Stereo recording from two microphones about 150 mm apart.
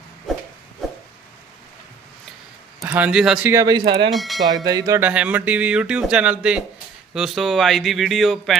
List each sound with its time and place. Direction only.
2.8 s speech: 10° right (ahead or behind)
3.5 s speech: 25° right (ahead or behind)
4.1 s speech: centre (ahead or behind)
4.4 s speech: 25° right (ahead or behind); by 8.5 s centre (ahead or behind)